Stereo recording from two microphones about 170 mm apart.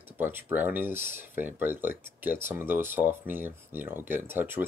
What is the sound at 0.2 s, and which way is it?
Speech, 10° right (ahead or behind).